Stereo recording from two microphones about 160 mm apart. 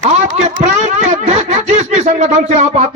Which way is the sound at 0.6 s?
50° right (ahead or behind).